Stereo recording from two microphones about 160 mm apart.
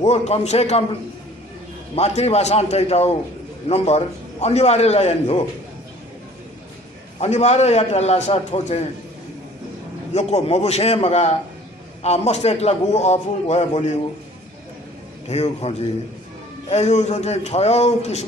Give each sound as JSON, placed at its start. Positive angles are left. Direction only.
{"t": 0.0, "sound": "a man's voice", "side_deg": 40}
{"t": 2.0, "sound": "a man's voice", "side_deg": 40}
{"t": 7.2, "sound": "a man's voice", "side_deg": 45}
{"t": 10.1, "sound": "a man's voice", "side_deg": 40}
{"t": 15.2, "sound": "a man's voice", "side_deg": 40}